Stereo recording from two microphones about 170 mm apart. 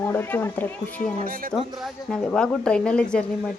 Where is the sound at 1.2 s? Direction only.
55° right (ahead or behind).